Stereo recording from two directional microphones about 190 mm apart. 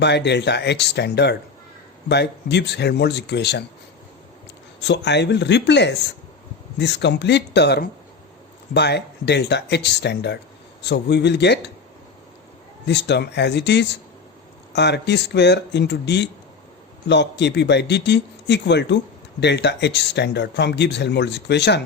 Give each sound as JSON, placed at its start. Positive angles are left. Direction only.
{"t": 0.0, "sound": "speech", "side_deg": 65}
{"t": 4.8, "sound": "speech", "side_deg": 65}
{"t": 12.9, "sound": "speech", "side_deg": 65}